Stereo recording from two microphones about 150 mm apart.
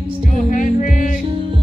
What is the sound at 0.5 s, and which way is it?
Music, 65° left (ahead or behind).